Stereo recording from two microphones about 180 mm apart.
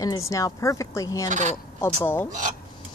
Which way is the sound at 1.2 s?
45° right (ahead or behind).